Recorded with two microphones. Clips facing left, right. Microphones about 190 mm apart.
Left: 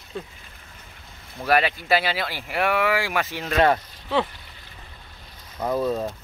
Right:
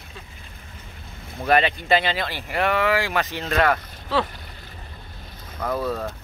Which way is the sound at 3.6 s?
25° left (ahead or behind).